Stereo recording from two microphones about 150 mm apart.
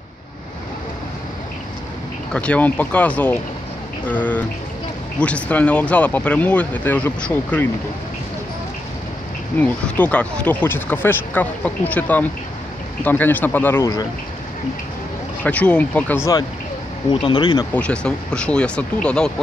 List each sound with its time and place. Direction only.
2.3 s speech: 10° left (ahead or behind)
9.6 s speech: 10° left (ahead or behind)
15.4 s speech: 10° left (ahead or behind)
17.3 s speech: 30° left (ahead or behind)
17.7 s speech: 5° left (ahead or behind)